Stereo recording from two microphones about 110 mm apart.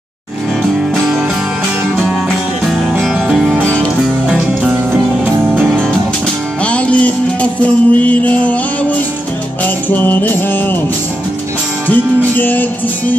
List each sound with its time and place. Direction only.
2.6 s music: 5° right (ahead or behind)
5.2 s music: 15° right (ahead or behind)
6.6 s music: 10° left (ahead or behind)
11.9 s music: 15° left (ahead or behind)